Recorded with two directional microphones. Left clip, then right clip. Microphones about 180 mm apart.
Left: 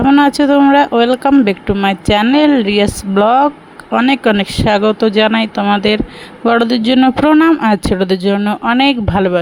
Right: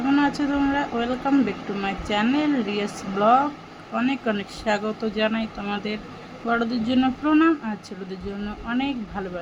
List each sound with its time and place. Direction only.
0.0 s speech: 55° left (ahead or behind)